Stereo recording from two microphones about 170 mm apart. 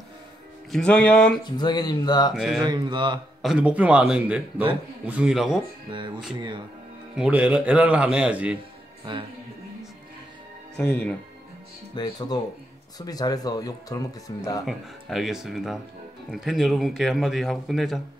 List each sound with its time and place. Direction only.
0.7 s speech: 5° left (ahead or behind)
1.4 s speech: 25° left (ahead or behind)
2.3 s speech: centre (ahead or behind)
2.6 s mantra: 25° right (ahead or behind)
3.4 s speech: 10° right (ahead or behind)
5.9 s mantra: 30° right (ahead or behind)
7.2 s speech: 5° right (ahead or behind)
11.9 s speech: 25° left (ahead or behind)
14.6 s speech: centre (ahead or behind)